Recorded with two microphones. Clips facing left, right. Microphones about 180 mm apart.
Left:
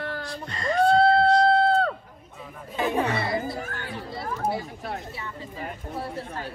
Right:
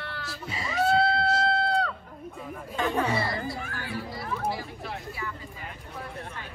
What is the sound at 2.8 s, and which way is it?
Speech, 15° left (ahead or behind).